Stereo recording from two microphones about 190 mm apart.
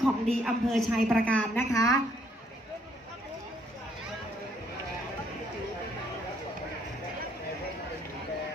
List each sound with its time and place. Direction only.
0.0 s a man's voice: centre (ahead or behind); by 2.0 s 15° left (ahead or behind)